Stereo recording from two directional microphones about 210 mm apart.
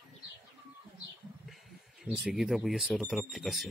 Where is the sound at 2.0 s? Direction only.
5° right (ahead or behind).